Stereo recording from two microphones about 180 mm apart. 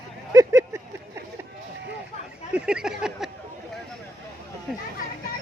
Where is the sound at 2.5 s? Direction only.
5° right (ahead or behind).